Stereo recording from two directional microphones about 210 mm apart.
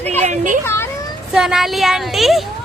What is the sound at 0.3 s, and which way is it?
Speech, 40° right (ahead or behind).